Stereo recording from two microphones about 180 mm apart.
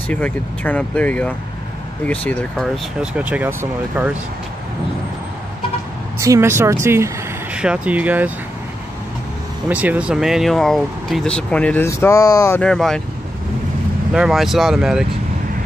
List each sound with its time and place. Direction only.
0.1 s speech: 10° left (ahead or behind)
3.0 s speech: 5° right (ahead or behind)
6.1 s speech: 15° right (ahead or behind)
9.7 s speech: 5° right (ahead or behind)
14.1 s speech: 5° right (ahead or behind)